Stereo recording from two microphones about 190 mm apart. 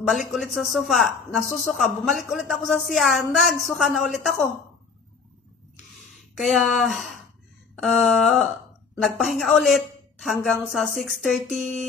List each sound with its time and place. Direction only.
0.0 s speech: centre (ahead or behind)
6.1 s speech: centre (ahead or behind)